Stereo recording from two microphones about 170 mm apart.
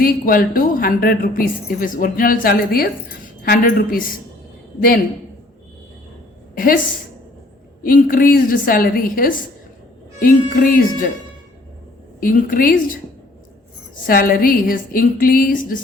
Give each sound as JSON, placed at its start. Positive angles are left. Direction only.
{"t": 0.0, "sound": "a woman's voice", "side_deg": 55}
{"t": 6.5, "sound": "a sound", "side_deg": 55}
{"t": 7.8, "sound": "a woman's voice", "side_deg": 55}
{"t": 12.2, "sound": "a woman's voice", "side_deg": 55}
{"t": 13.9, "sound": "a woman's voice", "side_deg": 60}